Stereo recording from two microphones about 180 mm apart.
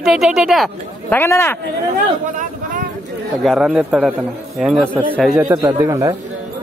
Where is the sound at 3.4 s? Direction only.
Centre (ahead or behind).